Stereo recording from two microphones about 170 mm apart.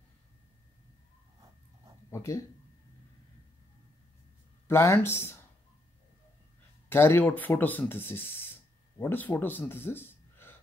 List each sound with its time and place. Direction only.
2.0 s speech: 15° left (ahead or behind)
4.6 s speech: 15° left (ahead or behind)
6.9 s speech: 15° left (ahead or behind)